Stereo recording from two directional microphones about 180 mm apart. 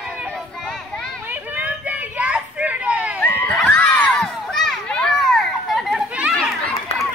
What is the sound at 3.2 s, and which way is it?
Children playing, 10° left (ahead or behind).